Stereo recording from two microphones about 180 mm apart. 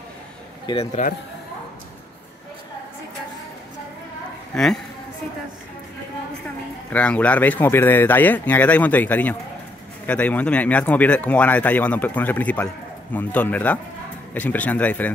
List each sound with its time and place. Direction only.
0.7 s a man's voice: 25° left (ahead or behind)
4.5 s speech: 5° left (ahead or behind)
6.9 s speech: 5° left (ahead or behind)